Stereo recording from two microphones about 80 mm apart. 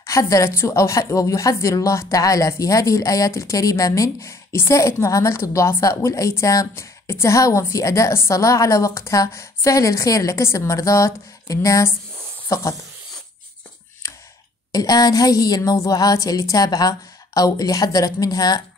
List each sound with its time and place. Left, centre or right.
0.0 s speech: left
14.7 s a woman's voice: left